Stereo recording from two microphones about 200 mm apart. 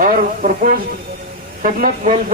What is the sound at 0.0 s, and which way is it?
Music, 40° right (ahead or behind).